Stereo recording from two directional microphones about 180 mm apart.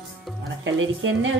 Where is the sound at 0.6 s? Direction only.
90° right.